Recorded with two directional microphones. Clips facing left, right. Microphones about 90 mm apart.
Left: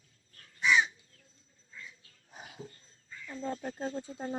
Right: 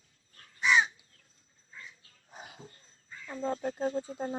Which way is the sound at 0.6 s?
45° right (ahead or behind).